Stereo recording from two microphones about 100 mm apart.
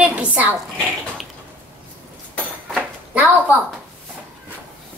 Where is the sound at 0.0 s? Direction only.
15° right (ahead or behind).